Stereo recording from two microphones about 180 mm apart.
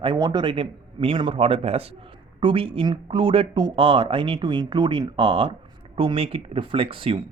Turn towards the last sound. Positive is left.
turn(degrees=-30)  # may be behind; listen again after turning